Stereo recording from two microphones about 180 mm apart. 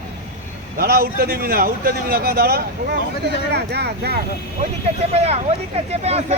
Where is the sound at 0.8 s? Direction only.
60° right (ahead or behind).